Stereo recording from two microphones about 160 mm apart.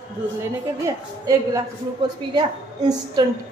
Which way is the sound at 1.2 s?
25° right (ahead or behind).